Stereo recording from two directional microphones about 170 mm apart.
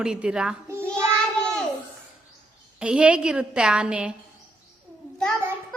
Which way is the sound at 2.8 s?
5° right (ahead or behind).